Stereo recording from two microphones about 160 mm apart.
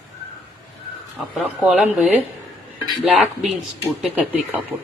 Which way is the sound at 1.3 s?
10° right (ahead or behind).